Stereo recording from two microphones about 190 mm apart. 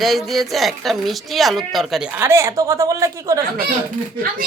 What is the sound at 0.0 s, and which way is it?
A woman's voice, centre (ahead or behind).